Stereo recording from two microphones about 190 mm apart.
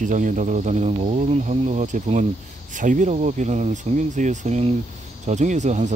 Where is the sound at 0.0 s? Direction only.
40° right (ahead or behind).